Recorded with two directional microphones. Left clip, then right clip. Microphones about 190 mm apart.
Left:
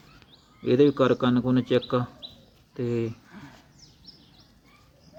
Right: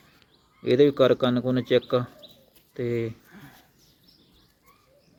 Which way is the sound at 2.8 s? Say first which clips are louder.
Right 1 dB; 5° right (ahead or behind).